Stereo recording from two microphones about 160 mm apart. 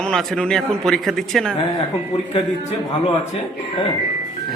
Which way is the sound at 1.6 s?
35° left (ahead or behind).